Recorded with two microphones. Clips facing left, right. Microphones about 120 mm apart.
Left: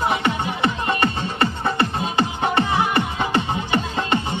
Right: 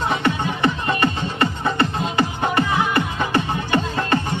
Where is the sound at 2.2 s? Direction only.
20° left (ahead or behind).